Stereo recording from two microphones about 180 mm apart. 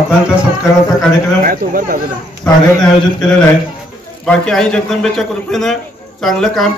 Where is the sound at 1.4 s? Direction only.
50° right (ahead or behind).